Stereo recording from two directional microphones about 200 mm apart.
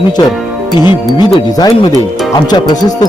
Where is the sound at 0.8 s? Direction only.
20° left (ahead or behind).